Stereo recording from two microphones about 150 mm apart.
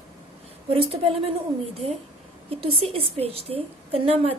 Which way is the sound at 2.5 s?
40° right (ahead or behind).